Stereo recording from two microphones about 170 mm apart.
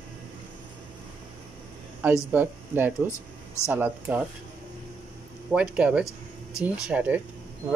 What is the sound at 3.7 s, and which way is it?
Speech, 10° right (ahead or behind).